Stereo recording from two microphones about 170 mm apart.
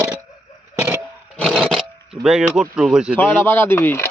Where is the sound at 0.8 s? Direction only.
15° right (ahead or behind).